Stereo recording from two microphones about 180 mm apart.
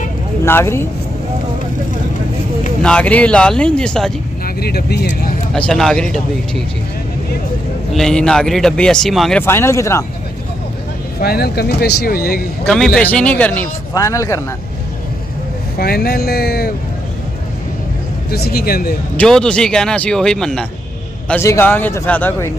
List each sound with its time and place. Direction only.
0.5 s a man's voice: 15° left (ahead or behind)
2.8 s speech: 5° left (ahead or behind)
4.6 s speech: 60° left (ahead or behind)
5.5 s speech: 5° left (ahead or behind)
7.9 s speech: 5° left (ahead or behind)
9.4 s a man's voice: 15° left (ahead or behind)
11.1 s speech: 60° left (ahead or behind)
12.6 s a man's voice: centre (ahead or behind)
15.8 s speech: 60° left (ahead or behind)
18.3 s speech: 60° left (ahead or behind)
19.1 s speech: 5° left (ahead or behind)
21.3 s a man's voice: 15° left (ahead or behind)